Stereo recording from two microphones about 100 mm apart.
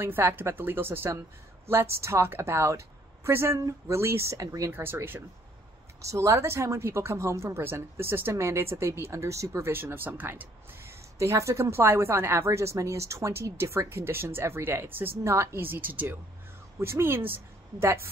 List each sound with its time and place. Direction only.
0.0 s a woman's voice: 20° right (ahead or behind)